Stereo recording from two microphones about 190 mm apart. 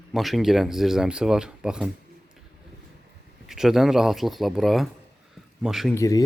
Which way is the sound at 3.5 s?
Centre (ahead or behind).